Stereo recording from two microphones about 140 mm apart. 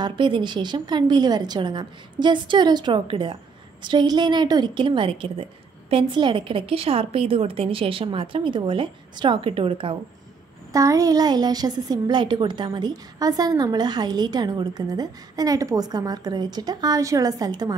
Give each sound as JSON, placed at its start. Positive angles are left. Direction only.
{"t": 0.0, "sound": "a woman's voice", "side_deg": -35}
{"t": 10.7, "sound": "a woman's voice", "side_deg": -25}